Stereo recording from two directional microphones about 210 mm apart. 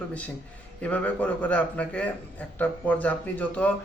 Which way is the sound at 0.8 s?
5° left (ahead or behind).